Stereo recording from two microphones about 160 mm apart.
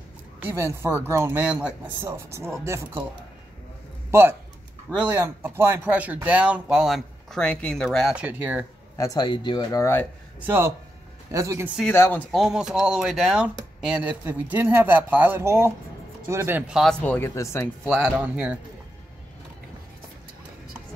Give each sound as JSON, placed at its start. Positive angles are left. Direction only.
{"t": 0.4, "sound": "speech", "side_deg": -10}
{"t": 4.1, "sound": "speech", "side_deg": -15}
{"t": 8.9, "sound": "speech", "side_deg": 20}
{"t": 10.4, "sound": "speech", "side_deg": -15}
{"t": 11.9, "sound": "speech", "side_deg": 15}
{"t": 12.3, "sound": "speech", "side_deg": 0}
{"t": 17.0, "sound": "speech", "side_deg": 15}
{"t": 17.8, "sound": "speech", "side_deg": 0}